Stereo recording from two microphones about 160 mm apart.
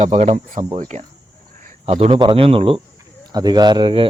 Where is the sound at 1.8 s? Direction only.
35° right (ahead or behind).